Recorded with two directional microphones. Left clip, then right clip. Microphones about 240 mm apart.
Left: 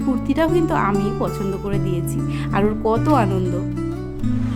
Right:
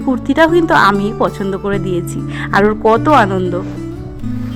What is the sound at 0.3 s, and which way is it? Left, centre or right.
Speech, centre.